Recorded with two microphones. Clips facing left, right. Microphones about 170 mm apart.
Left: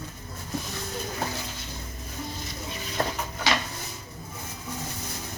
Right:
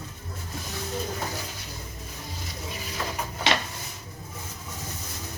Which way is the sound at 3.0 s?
50° left (ahead or behind).